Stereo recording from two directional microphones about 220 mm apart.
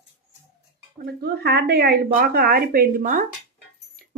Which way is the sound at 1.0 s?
40° right (ahead or behind).